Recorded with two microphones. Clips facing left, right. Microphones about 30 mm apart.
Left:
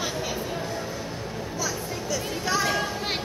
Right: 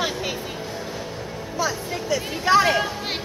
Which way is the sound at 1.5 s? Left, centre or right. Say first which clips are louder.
Right 7 dB; right.